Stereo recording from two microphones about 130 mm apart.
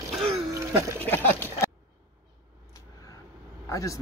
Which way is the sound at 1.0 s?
15° left (ahead or behind).